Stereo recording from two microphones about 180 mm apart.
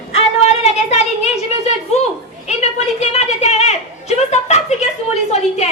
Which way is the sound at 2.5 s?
35° left (ahead or behind).